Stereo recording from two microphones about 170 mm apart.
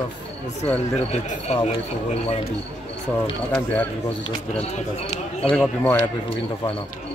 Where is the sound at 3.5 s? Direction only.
10° left (ahead or behind).